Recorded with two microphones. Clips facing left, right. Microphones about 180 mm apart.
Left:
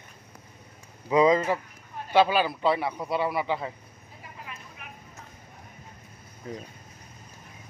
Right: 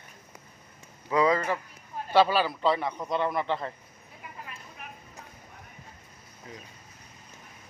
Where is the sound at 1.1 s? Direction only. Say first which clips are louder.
Left 4 dB; 20° left (ahead or behind).